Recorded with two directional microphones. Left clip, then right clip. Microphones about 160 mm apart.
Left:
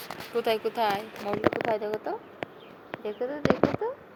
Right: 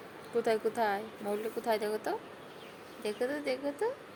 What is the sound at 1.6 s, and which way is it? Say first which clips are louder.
Speech: left 3 dB; 25° right (ahead or behind).